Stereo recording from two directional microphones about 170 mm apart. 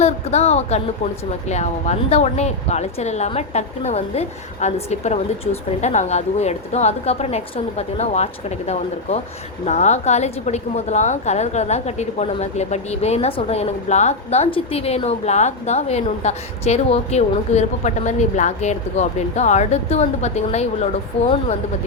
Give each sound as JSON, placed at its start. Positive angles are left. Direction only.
{"t": 0.0, "sound": "a woman's voice", "side_deg": 40}